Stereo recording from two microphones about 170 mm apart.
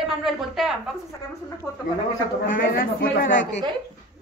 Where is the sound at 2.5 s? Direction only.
55° left (ahead or behind).